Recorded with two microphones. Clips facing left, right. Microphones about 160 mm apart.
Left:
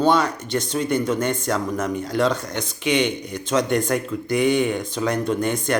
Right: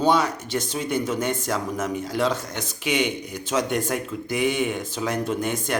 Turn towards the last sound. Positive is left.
turn(degrees=-5)  # may be behind; listen again after turning